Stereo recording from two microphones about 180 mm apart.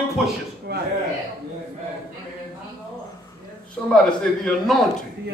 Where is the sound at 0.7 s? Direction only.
65° right (ahead or behind).